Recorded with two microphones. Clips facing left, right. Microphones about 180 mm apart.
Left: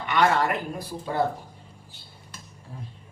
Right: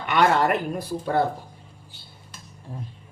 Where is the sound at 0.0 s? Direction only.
55° right (ahead or behind).